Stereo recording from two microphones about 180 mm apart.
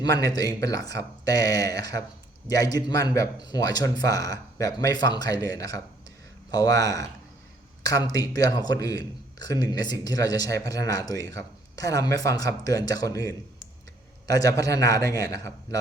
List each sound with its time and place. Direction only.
0.0 s a man's voice: 20° left (ahead or behind)